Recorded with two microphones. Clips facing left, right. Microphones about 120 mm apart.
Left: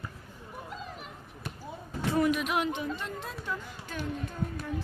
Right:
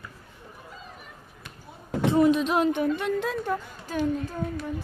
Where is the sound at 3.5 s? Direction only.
40° right (ahead or behind).